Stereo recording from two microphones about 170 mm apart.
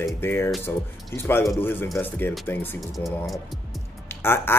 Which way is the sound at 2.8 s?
Centre (ahead or behind).